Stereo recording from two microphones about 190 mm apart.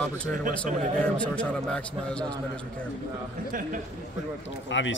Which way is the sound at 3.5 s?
45° right (ahead or behind).